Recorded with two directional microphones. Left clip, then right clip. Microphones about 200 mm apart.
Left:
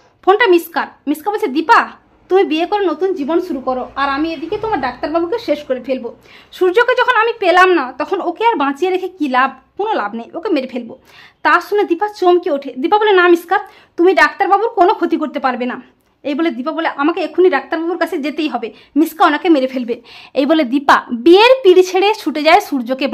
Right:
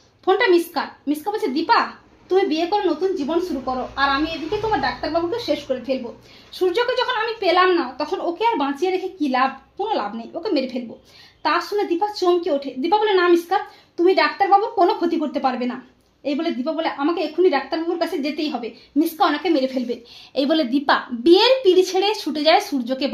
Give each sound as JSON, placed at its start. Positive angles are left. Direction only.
{"t": 0.2, "sound": "a woman's voice", "side_deg": 30}
{"t": 6.6, "sound": "a woman's voice", "side_deg": 35}